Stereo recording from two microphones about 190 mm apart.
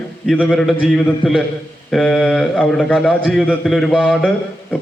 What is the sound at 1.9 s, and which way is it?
A man's voice, centre (ahead or behind).